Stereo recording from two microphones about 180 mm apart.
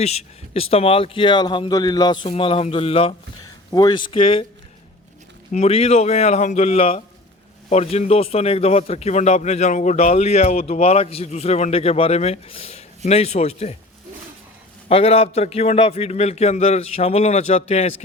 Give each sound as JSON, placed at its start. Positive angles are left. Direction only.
{"t": 0.0, "sound": "speech", "side_deg": 35}
{"t": 5.5, "sound": "a man's voice", "side_deg": 35}
{"t": 14.8, "sound": "a man's voice", "side_deg": 35}